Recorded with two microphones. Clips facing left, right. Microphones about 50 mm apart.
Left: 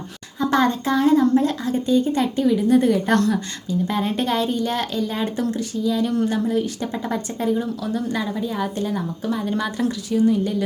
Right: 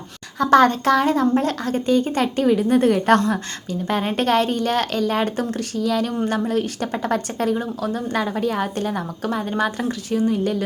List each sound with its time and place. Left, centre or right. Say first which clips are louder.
0.3 s a woman's voice: right 5 dB; right
7.5 s a woman's voice: even; right